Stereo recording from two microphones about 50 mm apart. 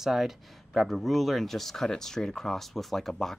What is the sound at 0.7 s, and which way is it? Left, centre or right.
Speech, centre.